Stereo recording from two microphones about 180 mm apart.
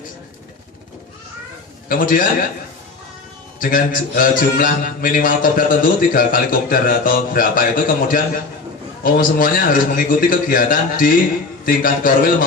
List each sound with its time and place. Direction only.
1.9 s a man's voice: 50° left (ahead or behind)
3.6 s a man's voice: 50° left (ahead or behind)